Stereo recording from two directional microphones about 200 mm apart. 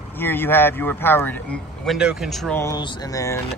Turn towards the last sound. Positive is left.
turn(degrees=15)  # may be behind; listen again after turning